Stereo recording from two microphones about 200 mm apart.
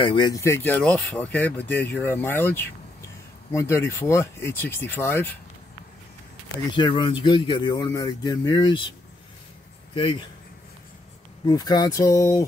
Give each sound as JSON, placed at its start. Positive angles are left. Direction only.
{"t": 0.0, "sound": "speech", "side_deg": 25}
{"t": 6.7, "sound": "speech", "side_deg": 20}
{"t": 11.4, "sound": "speech", "side_deg": 20}